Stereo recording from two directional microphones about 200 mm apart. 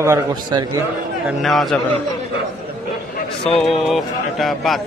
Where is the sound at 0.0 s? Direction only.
15° right (ahead or behind).